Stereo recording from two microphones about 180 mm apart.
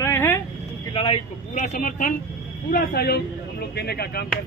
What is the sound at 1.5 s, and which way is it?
Speech, 45° left (ahead or behind).